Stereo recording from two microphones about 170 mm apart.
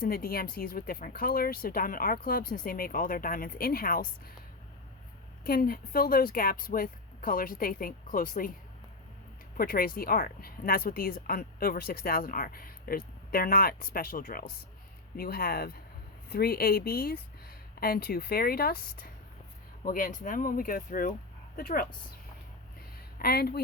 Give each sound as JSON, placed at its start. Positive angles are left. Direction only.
{"t": 0.0, "sound": "speech", "side_deg": 60}
{"t": 5.4, "sound": "speech", "side_deg": 60}
{"t": 9.6, "sound": "speech", "side_deg": 60}
{"t": 23.1, "sound": "speech", "side_deg": 65}